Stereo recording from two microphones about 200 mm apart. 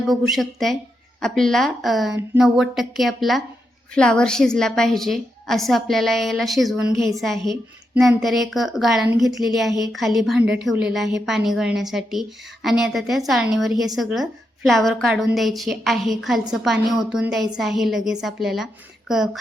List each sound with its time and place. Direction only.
0.1 s a woman's voice: centre (ahead or behind)
6.9 s a woman's voice: 15° right (ahead or behind)
7.2 s a woman's voice: centre (ahead or behind)